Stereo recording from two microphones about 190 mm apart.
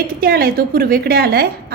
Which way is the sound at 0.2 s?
50° right (ahead or behind).